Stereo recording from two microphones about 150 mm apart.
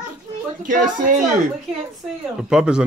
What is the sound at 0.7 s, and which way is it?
Speech, 65° right (ahead or behind).